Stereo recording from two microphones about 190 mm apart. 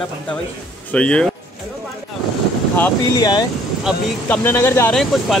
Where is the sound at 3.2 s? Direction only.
20° left (ahead or behind).